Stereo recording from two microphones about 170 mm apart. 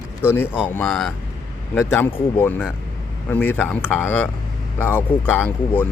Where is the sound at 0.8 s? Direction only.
5° left (ahead or behind).